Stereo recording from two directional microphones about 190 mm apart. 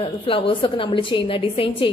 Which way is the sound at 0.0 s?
25° left (ahead or behind).